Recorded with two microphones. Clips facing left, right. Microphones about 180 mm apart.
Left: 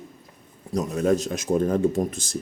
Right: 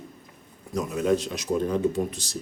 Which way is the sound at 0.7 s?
40° left (ahead or behind).